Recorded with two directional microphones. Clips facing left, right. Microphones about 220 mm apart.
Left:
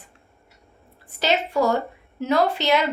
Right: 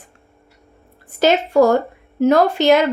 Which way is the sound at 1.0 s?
45° right (ahead or behind).